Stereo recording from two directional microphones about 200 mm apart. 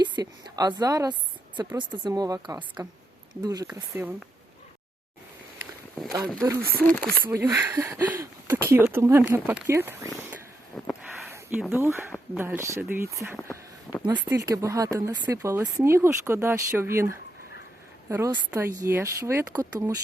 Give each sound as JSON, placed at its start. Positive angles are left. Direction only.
{"t": 0.0, "sound": "a woman's voice", "side_deg": -20}
{"t": 6.6, "sound": "speech", "side_deg": -50}
{"t": 7.3, "sound": "speech", "side_deg": -10}
{"t": 10.2, "sound": "vehicle", "side_deg": -10}
{"t": 10.7, "sound": "a sound", "side_deg": 0}
{"t": 11.7, "sound": "speech", "side_deg": -10}
{"t": 13.3, "sound": "a sound", "side_deg": 15}
{"t": 14.0, "sound": "speech", "side_deg": -25}